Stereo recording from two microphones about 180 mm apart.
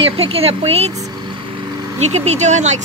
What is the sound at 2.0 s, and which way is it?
Speech, 35° right (ahead or behind).